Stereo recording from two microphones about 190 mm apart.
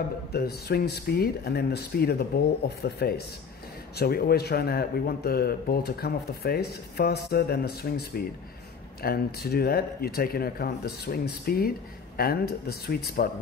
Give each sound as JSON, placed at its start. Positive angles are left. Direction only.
{"t": 0.3, "sound": "speech", "side_deg": 55}